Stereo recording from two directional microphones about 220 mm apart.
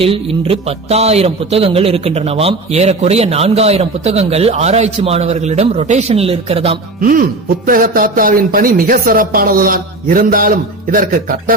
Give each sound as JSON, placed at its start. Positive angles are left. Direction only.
{"t": 0.0, "sound": "speech", "side_deg": -25}
{"t": 7.0, "sound": "speech", "side_deg": -40}